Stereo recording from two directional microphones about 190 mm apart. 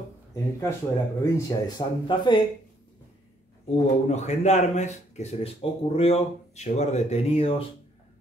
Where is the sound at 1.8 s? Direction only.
25° left (ahead or behind).